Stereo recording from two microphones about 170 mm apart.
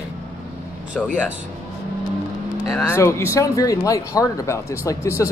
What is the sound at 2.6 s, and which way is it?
Speech, 15° left (ahead or behind).